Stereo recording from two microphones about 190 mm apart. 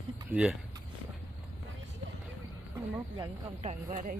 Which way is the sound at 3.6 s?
40° right (ahead or behind).